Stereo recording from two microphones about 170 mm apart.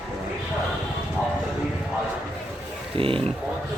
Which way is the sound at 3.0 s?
30° right (ahead or behind).